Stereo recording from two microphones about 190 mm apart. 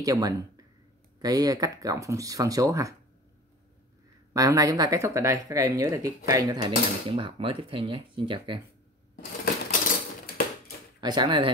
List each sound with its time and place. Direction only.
0.0 s speech: 20° right (ahead or behind)
4.3 s speech: 20° right (ahead or behind)
9.1 s coin: 45° left (ahead or behind)
11.0 s speech: 25° right (ahead or behind)